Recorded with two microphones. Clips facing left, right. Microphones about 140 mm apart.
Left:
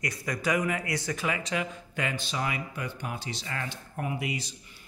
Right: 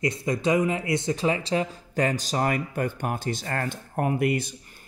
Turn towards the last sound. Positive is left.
turn(degrees=-55)  # may be behind; listen again after turning